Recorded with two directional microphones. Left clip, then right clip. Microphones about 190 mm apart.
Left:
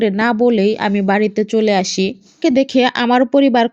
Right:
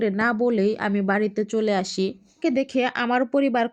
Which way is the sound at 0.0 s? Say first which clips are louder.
Left 8 dB; 25° left (ahead or behind).